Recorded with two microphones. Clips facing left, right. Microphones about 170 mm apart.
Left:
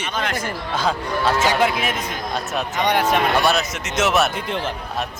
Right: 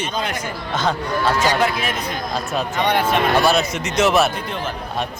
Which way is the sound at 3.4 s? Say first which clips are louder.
Right 3 dB; centre (ahead or behind).